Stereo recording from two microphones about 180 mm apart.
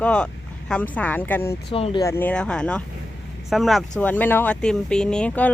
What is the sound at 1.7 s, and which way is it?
Speech, 30° left (ahead or behind).